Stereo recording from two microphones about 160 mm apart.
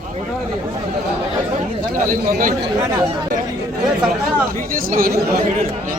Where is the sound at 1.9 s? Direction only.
60° right (ahead or behind).